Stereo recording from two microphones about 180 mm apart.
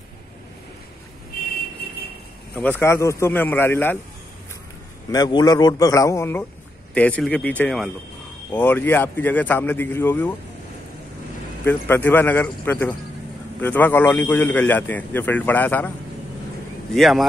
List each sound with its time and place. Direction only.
1.8 s vehicle: 60° left (ahead or behind)
2.5 s a man's voice: 10° left (ahead or behind)
5.1 s a man's voice: 20° left (ahead or behind)
11.6 s a man's voice: 10° left (ahead or behind)
16.9 s speech: centre (ahead or behind)